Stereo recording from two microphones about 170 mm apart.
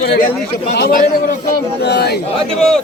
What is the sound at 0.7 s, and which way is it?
Speech, 75° left (ahead or behind).